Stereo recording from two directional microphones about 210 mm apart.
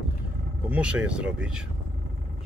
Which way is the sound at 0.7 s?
5° right (ahead or behind).